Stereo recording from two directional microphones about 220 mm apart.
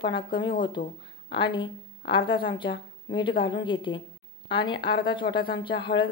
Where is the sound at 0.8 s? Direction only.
40° left (ahead or behind).